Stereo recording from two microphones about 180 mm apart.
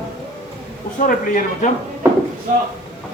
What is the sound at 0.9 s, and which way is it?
Speech, 45° left (ahead or behind).